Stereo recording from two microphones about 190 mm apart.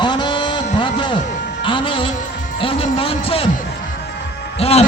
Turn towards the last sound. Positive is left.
turn(degrees=30)  # may be behind; listen again after turning